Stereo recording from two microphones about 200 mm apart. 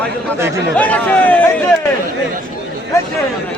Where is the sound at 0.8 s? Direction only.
5° left (ahead or behind).